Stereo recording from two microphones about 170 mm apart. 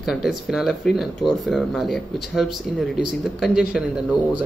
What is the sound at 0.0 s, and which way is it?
Speech, centre (ahead or behind).